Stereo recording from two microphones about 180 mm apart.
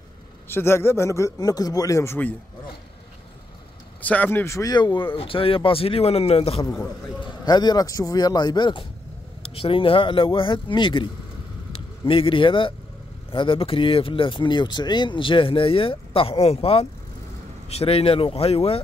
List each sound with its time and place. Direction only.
0.5 s a man's voice: 15° left (ahead or behind)
4.0 s speech: 10° left (ahead or behind); by 6.6 s 35° left (ahead or behind)
6.6 s a man's voice: 15° left (ahead or behind); by 18.8 s 35° left (ahead or behind)